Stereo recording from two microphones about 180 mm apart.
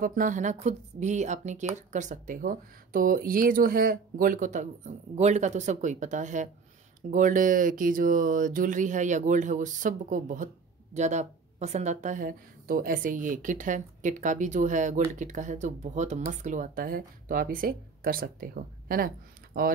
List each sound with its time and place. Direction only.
0.0 s a woman's voice: 45° right (ahead or behind)